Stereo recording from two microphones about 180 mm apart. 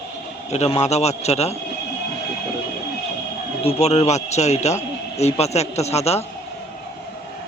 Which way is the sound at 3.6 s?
35° left (ahead or behind).